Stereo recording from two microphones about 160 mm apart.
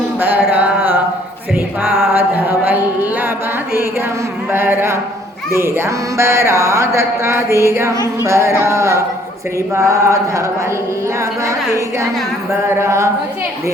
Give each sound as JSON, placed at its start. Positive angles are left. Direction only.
{"t": 0.2, "sound": "carnatic music", "side_deg": -10}
{"t": 1.5, "sound": "music", "side_deg": -15}
{"t": 4.5, "sound": "music", "side_deg": -15}
{"t": 9.7, "sound": "chant", "side_deg": -20}
{"t": 12.5, "sound": "music", "side_deg": -15}